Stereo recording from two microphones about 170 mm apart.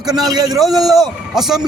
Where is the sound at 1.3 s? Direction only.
Centre (ahead or behind).